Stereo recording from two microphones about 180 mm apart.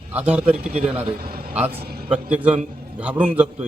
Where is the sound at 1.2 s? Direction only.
55° right (ahead or behind).